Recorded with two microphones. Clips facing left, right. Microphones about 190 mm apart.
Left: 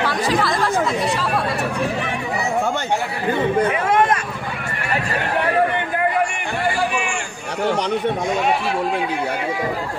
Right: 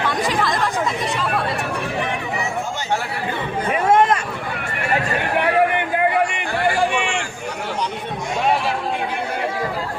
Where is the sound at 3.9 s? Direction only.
25° right (ahead or behind).